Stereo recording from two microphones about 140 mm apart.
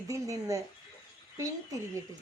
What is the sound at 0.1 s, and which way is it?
Speech, 25° right (ahead or behind).